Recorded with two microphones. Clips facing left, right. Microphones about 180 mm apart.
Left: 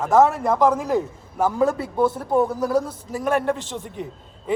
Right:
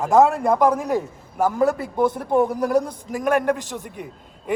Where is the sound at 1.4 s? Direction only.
10° right (ahead or behind).